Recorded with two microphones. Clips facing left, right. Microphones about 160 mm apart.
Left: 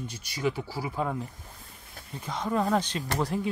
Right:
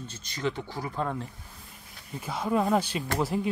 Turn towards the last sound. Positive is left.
turn(degrees=-5)  # may be behind; listen again after turning